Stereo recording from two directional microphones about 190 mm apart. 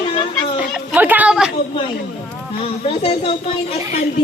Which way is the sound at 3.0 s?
35° left (ahead or behind).